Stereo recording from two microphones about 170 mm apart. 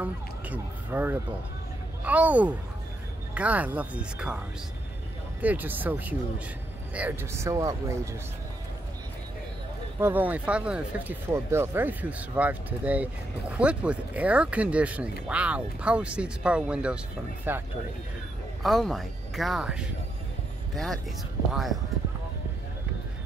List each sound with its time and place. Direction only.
0.0 s speech: 10° right (ahead or behind)
5.4 s speech: 10° right (ahead or behind)
9.9 s speech: 10° right (ahead or behind)
18.6 s speech: centre (ahead or behind)